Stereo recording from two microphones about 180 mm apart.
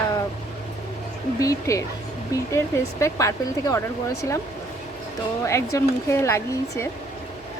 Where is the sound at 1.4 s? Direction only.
20° left (ahead or behind).